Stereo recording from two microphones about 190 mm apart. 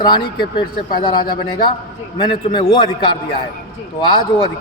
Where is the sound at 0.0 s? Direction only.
25° left (ahead or behind).